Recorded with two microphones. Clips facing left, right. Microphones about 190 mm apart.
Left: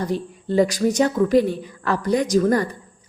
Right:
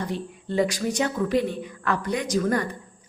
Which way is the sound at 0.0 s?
40° left (ahead or behind).